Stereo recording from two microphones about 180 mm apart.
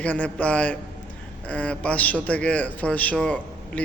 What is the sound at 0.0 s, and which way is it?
Speech, 10° left (ahead or behind).